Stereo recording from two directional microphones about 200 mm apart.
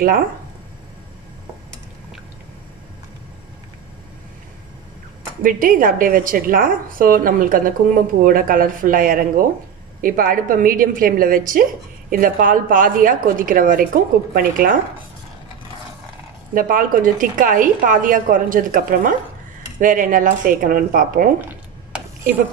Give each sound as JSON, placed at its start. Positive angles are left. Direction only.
{"t": 5.4, "sound": "a woman's voice", "side_deg": -45}
{"t": 16.5, "sound": "a woman's voice", "side_deg": -45}